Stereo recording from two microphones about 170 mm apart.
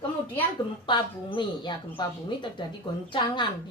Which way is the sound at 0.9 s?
25° left (ahead or behind).